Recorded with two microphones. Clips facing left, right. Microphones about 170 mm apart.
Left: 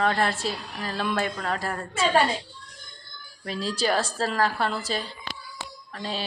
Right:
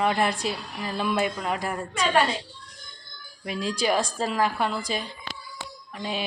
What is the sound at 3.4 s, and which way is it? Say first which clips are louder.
Speech: right 1 dB; 15° right (ahead or behind).